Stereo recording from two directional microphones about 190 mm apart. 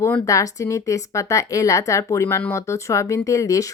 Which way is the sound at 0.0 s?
15° left (ahead or behind).